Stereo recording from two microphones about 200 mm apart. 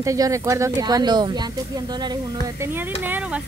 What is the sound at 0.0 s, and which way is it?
Speech, 15° right (ahead or behind).